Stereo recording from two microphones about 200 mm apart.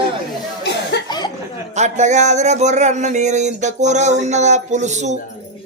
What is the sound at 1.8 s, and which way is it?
Speech, 35° right (ahead or behind).